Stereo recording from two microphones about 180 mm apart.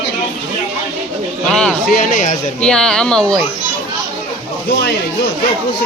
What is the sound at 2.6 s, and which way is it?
Speech, 5° left (ahead or behind).